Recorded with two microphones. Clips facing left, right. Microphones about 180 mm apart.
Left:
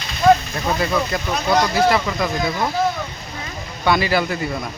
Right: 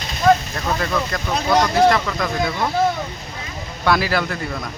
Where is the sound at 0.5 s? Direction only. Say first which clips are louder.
Left 2 dB; 10° left (ahead or behind).